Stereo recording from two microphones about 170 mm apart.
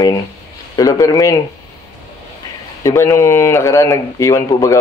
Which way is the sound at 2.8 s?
15° left (ahead or behind).